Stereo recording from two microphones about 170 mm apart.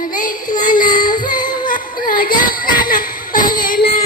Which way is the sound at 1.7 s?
55° left (ahead or behind).